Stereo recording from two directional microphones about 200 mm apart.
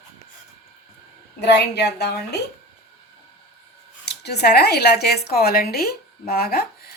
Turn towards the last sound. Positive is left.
turn(degrees=50)  # may be behind; listen again after turning